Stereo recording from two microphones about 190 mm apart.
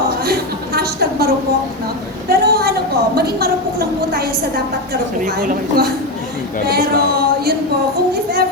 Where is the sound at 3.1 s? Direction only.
55° right (ahead or behind).